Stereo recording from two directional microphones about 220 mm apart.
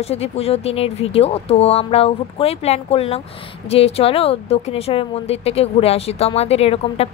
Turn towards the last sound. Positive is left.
turn(degrees=25)  # may be behind; listen again after turning